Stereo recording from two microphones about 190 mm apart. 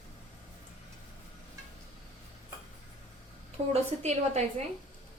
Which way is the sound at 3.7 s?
35° right (ahead or behind).